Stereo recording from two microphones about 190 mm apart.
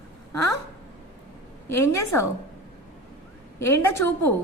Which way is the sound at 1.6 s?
15° left (ahead or behind).